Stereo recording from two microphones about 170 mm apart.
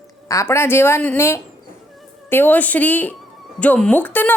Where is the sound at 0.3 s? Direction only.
15° left (ahead or behind).